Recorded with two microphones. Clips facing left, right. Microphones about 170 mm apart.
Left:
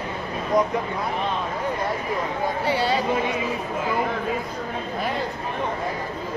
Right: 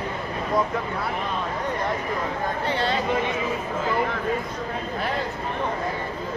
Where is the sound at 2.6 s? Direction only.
10° left (ahead or behind).